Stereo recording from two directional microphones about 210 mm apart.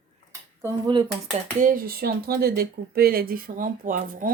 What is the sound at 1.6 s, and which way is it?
Speech, 45° right (ahead or behind).